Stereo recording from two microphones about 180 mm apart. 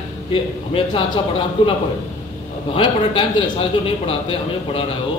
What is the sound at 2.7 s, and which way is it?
A man's voice, 30° left (ahead or behind).